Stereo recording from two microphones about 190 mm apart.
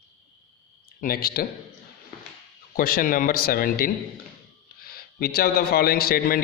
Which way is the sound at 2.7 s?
50° left (ahead or behind).